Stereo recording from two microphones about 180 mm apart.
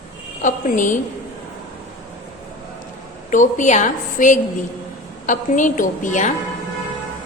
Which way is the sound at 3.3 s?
45° left (ahead or behind).